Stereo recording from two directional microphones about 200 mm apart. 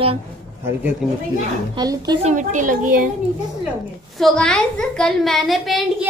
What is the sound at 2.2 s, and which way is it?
Speech, 40° right (ahead or behind).